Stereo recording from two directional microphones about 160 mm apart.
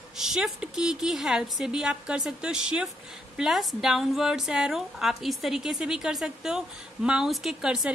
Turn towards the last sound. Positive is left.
turn(degrees=-5)  # may be behind; listen again after turning